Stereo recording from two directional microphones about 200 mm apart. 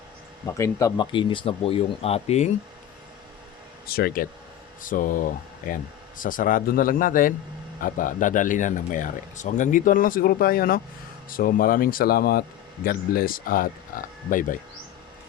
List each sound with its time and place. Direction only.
0.4 s speech: 15° left (ahead or behind); by 2.5 s 35° left (ahead or behind)
3.8 s a man's voice: 50° left (ahead or behind)